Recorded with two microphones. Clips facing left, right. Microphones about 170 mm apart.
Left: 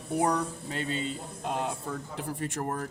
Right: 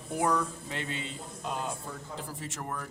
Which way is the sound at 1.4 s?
60° left (ahead or behind).